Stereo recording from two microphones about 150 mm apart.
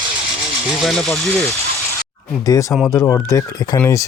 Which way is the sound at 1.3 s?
20° left (ahead or behind).